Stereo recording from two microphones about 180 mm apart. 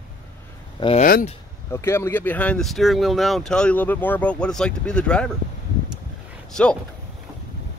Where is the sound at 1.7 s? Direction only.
15° left (ahead or behind).